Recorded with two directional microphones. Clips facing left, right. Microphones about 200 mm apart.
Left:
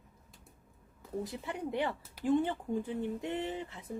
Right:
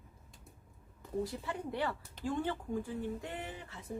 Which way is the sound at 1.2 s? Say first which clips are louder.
Even; 20° left (ahead or behind).